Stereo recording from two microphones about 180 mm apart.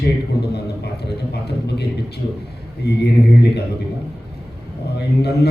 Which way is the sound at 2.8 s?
65° left (ahead or behind).